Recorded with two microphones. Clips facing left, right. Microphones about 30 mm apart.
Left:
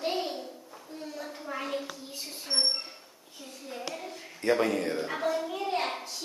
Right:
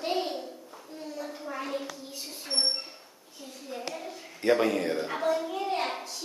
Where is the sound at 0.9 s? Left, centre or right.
Centre.